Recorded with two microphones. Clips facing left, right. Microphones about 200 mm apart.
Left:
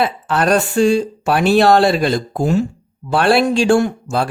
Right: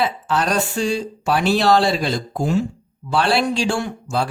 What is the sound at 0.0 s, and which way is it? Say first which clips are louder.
Speech: left 4 dB; 55° left (ahead or behind).